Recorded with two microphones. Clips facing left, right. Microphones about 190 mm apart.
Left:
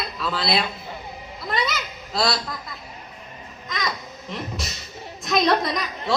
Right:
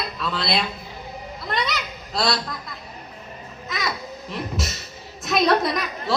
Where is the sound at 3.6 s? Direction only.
5° right (ahead or behind).